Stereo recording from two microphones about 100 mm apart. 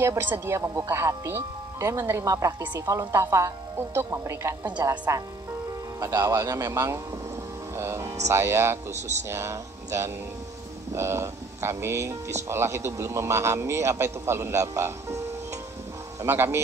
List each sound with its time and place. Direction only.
0.0 s speech: 25° right (ahead or behind)